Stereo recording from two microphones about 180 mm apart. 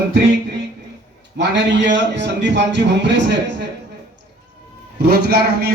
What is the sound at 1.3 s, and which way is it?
A man's voice, 75° right (ahead or behind).